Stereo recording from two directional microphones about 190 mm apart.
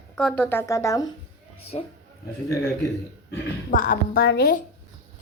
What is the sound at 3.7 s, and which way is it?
Speech, 45° left (ahead or behind).